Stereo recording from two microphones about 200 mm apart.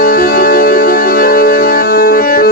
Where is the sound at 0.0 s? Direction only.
45° left (ahead or behind).